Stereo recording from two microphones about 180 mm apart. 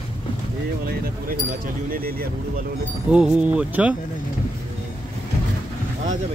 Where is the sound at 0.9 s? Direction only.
55° right (ahead or behind).